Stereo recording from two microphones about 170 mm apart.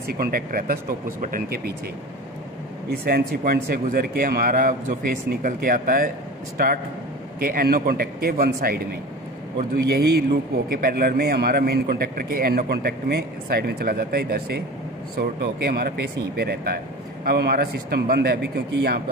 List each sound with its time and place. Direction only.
0.2 s speech: 60° right (ahead or behind)
2.9 s speech: 60° right (ahead or behind)
7.3 s speech: 60° right (ahead or behind)
9.8 s a man's voice: 70° right (ahead or behind)